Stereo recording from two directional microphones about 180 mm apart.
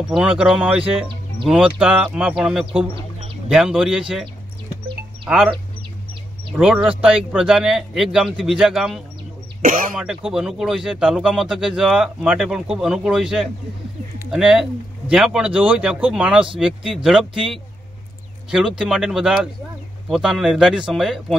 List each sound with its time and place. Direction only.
0.1 s speech: 5° right (ahead or behind)
6.5 s speech: 10° right (ahead or behind)
9.6 s speech: 50° right (ahead or behind)
9.9 s speech: 5° right (ahead or behind)